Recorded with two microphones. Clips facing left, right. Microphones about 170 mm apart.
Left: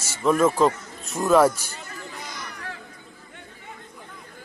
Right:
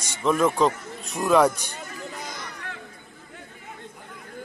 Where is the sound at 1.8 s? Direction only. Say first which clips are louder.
Right 4 dB; 50° right (ahead or behind).